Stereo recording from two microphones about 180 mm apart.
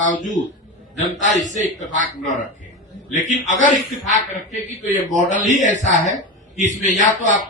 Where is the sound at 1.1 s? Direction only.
45° left (ahead or behind).